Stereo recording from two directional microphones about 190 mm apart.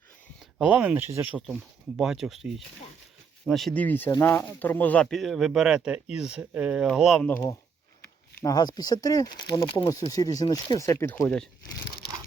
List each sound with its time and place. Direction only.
0.6 s speech: 5° right (ahead or behind)
7.3 s speech: 15° left (ahead or behind)